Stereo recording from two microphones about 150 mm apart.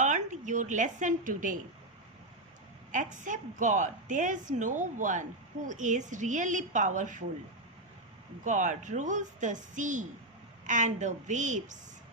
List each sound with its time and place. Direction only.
0.0 s a woman's voice: 55° right (ahead or behind)
2.9 s a woman's voice: 55° right (ahead or behind)
8.4 s a woman's voice: 55° right (ahead or behind)